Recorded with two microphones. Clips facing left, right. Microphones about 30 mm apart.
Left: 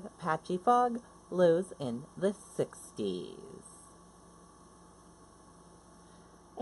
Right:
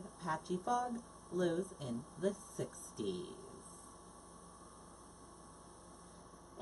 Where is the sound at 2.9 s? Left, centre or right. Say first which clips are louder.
Left 3 dB; left.